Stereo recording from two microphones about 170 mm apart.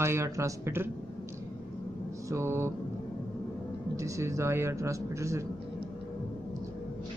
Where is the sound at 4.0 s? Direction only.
20° right (ahead or behind).